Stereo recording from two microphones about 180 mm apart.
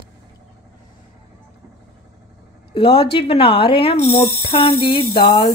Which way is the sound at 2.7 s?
30° left (ahead or behind).